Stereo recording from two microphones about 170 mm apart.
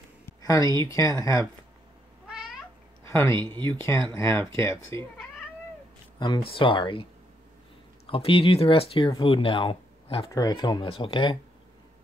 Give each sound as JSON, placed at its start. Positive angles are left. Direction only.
{"t": 0.4, "sound": "speech", "side_deg": 20}
{"t": 2.2, "sound": "cat", "side_deg": -5}
{"t": 3.1, "sound": "speech", "side_deg": 15}
{"t": 6.1, "sound": "speech", "side_deg": 25}
{"t": 8.1, "sound": "speech", "side_deg": 35}